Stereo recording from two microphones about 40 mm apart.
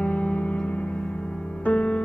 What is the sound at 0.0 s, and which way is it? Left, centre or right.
Music, left.